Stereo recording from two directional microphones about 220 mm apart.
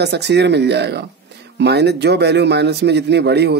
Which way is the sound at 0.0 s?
50° right (ahead or behind).